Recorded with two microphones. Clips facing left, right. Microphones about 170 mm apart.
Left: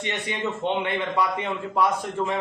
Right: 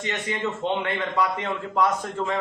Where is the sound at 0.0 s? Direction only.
20° left (ahead or behind).